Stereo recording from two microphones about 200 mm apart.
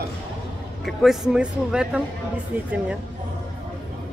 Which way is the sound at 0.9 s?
Centre (ahead or behind).